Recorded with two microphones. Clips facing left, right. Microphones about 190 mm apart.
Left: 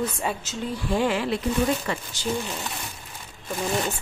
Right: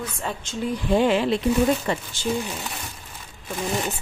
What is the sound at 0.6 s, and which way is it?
Speech, 20° right (ahead or behind).